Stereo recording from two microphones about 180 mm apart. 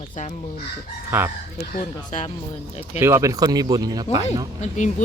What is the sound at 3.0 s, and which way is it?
Speech, 15° right (ahead or behind).